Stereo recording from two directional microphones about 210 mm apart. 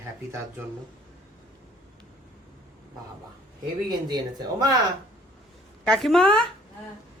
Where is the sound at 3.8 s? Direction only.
20° right (ahead or behind).